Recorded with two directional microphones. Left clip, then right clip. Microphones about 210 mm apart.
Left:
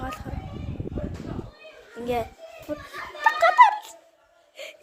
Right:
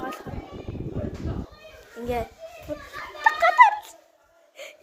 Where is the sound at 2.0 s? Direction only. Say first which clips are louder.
Left 1 dB; 20° left (ahead or behind).